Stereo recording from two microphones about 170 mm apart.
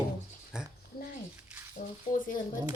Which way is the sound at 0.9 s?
60° left (ahead or behind).